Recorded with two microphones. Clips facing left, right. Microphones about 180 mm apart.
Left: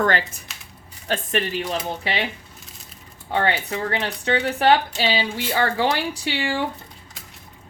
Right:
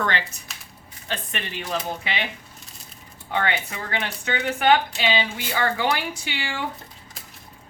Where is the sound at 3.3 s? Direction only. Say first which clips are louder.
Left 3 dB; 30° left (ahead or behind).